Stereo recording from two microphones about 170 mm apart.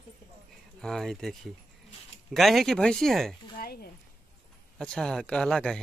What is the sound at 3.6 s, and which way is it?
Speech, 65° left (ahead or behind).